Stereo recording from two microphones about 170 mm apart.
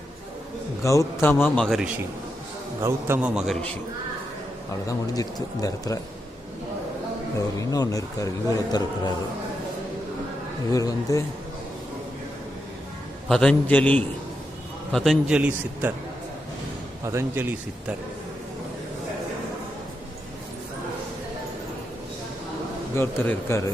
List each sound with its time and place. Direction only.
0.8 s a man's voice: 15° left (ahead or behind); by 1.9 s centre (ahead or behind)
2.8 s a man's voice: 10° right (ahead or behind)
4.9 s speech: 20° left (ahead or behind)
7.3 s speech: 20° left (ahead or behind)
10.7 s speech: 20° left (ahead or behind)
13.2 s a man's voice: 5° left (ahead or behind)
17.0 s a man's voice: 15° right (ahead or behind)
23.0 s a man's voice: 15° left (ahead or behind)